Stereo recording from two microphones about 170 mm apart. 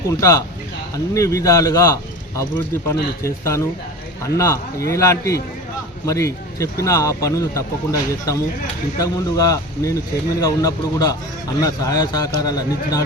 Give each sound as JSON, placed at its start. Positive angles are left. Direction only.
{"t": 0.1, "sound": "a man's voice", "side_deg": 20}